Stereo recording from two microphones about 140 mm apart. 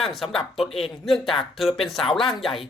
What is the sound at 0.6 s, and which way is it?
Speech, 40° left (ahead or behind).